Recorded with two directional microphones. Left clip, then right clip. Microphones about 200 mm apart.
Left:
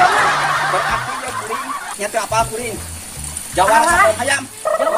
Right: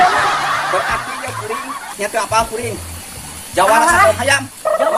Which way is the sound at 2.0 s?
10° right (ahead or behind).